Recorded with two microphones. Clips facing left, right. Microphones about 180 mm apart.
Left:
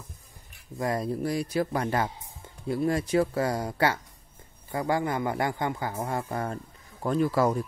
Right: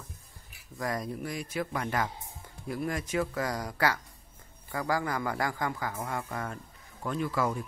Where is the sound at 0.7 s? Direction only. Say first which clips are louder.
Left 5 dB; 25° left (ahead or behind).